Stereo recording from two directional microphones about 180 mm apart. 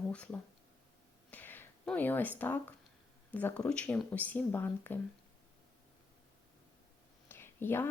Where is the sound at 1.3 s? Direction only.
10° left (ahead or behind).